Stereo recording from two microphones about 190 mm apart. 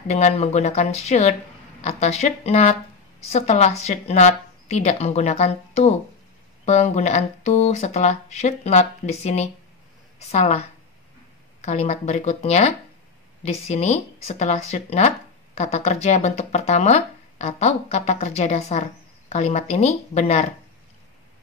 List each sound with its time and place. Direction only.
0.1 s speech: 35° left (ahead or behind)
11.6 s speech: 35° left (ahead or behind)